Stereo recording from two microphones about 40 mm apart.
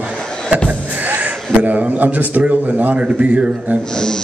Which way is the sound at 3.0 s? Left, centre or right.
Right.